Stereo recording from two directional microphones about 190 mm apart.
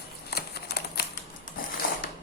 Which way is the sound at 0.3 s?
55° left (ahead or behind).